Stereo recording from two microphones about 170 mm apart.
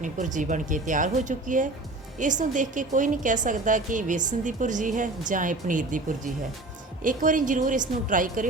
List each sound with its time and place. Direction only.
0.0 s a woman's voice: 45° right (ahead or behind)